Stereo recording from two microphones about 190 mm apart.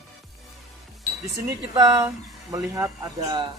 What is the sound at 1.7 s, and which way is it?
Speech, 20° right (ahead or behind).